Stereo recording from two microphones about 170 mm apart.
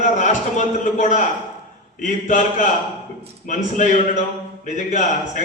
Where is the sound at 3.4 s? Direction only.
45° left (ahead or behind).